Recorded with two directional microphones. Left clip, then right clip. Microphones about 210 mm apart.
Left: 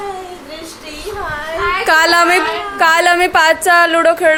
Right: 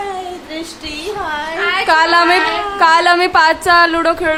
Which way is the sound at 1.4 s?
25° right (ahead or behind).